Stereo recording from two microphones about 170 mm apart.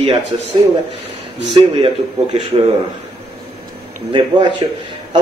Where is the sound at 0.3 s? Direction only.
35° right (ahead or behind).